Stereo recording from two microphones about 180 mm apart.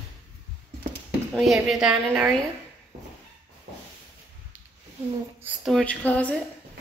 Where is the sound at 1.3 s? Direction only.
Centre (ahead or behind).